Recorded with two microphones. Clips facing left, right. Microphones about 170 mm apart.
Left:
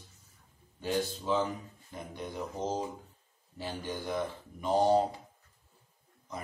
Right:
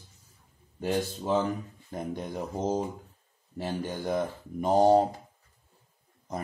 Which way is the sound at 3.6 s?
50° right (ahead or behind).